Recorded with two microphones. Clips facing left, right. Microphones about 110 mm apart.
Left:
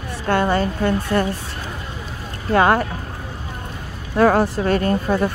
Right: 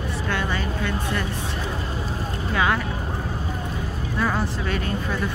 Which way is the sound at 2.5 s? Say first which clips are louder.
Left 8 dB; 50° left (ahead or behind).